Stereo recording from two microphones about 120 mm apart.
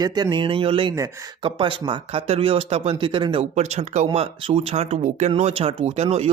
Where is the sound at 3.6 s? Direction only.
65° right (ahead or behind).